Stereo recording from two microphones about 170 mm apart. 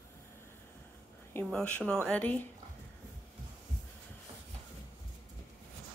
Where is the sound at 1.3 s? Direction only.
5° left (ahead or behind).